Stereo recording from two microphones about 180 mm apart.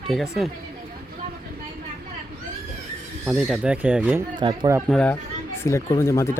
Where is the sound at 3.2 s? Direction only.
Centre (ahead or behind).